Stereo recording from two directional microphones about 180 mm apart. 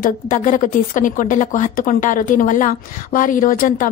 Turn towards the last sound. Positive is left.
turn(degrees=50)  # may be behind; listen again after turning